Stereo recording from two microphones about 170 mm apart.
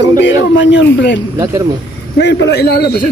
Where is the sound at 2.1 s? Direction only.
80° left.